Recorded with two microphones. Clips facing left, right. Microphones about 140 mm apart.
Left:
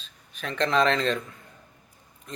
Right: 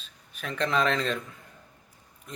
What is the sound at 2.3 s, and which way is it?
Oink, 10° right (ahead or behind).